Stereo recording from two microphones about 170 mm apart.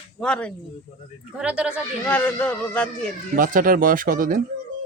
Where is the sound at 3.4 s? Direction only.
55° right (ahead or behind).